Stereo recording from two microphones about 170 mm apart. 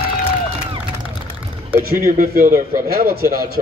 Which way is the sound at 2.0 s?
55° right (ahead or behind).